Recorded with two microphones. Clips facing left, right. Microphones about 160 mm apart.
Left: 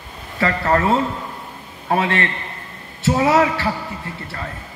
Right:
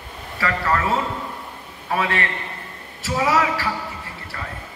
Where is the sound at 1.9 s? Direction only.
30° left (ahead or behind).